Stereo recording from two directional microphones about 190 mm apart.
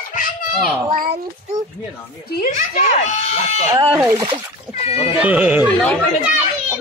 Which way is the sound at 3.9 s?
15° right (ahead or behind).